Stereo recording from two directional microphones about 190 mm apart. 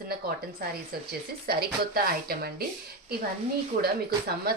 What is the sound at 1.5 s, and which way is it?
Speech, 55° right (ahead or behind).